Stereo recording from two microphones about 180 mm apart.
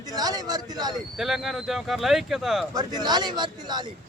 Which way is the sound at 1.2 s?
Centre (ahead or behind).